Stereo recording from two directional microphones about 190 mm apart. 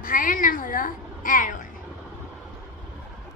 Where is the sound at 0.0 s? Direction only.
45° left (ahead or behind).